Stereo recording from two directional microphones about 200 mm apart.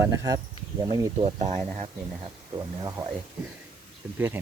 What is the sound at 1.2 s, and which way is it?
Speech, 35° right (ahead or behind).